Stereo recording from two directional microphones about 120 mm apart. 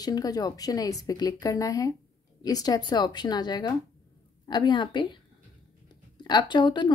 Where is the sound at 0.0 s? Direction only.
30° left (ahead or behind).